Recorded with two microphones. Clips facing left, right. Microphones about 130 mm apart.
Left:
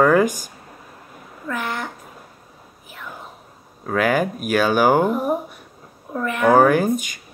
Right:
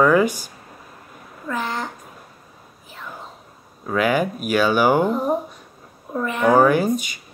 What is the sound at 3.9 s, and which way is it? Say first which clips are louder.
Speech: even; 45° left (ahead or behind).